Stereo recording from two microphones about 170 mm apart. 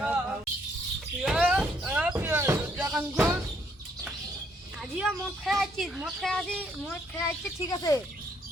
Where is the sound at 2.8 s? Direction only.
5° right (ahead or behind).